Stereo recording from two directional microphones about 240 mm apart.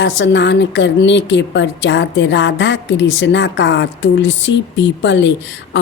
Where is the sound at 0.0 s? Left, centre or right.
Left.